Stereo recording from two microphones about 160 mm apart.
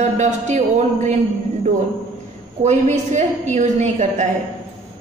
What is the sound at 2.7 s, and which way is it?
A man's voice, 45° right (ahead or behind).